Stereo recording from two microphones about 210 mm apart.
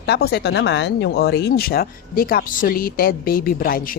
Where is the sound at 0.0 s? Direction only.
50° left (ahead or behind).